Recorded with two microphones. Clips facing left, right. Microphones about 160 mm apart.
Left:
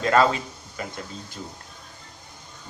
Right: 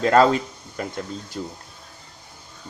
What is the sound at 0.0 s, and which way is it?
Speech, 40° right (ahead or behind).